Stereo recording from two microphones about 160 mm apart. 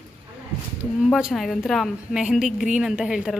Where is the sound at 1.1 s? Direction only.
Centre (ahead or behind).